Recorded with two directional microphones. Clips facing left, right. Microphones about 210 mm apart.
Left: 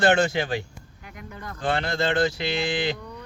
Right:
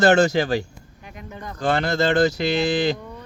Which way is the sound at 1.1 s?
20° right (ahead or behind).